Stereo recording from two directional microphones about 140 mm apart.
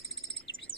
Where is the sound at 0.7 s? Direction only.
90° left.